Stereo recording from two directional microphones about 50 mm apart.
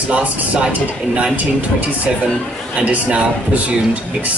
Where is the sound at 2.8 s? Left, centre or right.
Right.